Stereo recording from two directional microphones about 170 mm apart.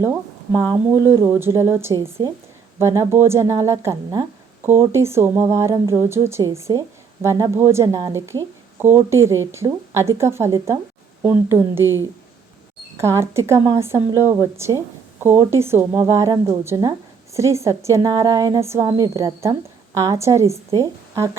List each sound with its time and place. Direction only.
0.0 s a woman's voice: 15° right (ahead or behind)
13.0 s a woman's voice: 15° right (ahead or behind)